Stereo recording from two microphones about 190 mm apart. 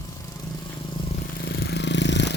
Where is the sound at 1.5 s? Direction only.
60° left (ahead or behind).